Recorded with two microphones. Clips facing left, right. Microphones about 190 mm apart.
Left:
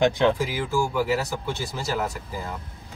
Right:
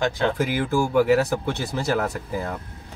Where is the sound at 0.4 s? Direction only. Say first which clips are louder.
Right 3 dB; 60° right (ahead or behind).